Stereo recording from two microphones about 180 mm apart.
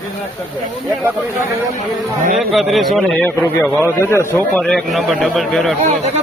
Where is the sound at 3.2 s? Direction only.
15° left (ahead or behind).